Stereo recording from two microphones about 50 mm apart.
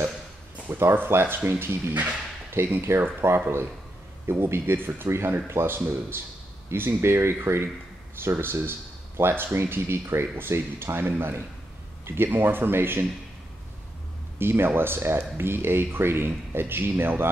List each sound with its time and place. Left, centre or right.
0.9 s speech: right
7.0 s speech: right
14.4 s speech: right